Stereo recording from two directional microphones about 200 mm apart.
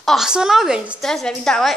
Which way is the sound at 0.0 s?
Centre (ahead or behind).